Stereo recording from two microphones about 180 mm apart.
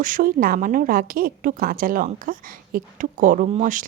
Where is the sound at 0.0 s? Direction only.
50° right (ahead or behind).